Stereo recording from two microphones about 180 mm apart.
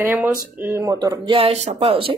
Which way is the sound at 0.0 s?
10° right (ahead or behind).